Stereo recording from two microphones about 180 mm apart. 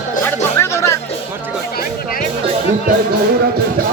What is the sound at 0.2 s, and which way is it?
Music, 15° left (ahead or behind).